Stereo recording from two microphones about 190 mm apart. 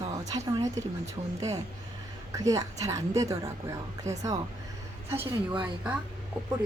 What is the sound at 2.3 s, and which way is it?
A woman's voice, 20° right (ahead or behind).